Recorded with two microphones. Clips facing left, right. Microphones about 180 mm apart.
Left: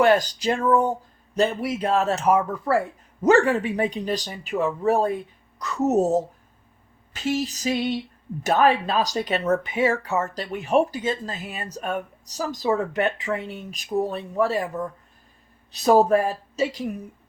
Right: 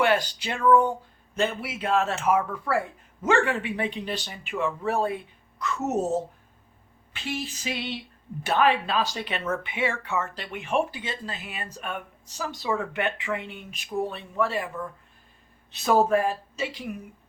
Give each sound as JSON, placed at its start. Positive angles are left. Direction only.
{"t": 0.0, "sound": "speech", "side_deg": 40}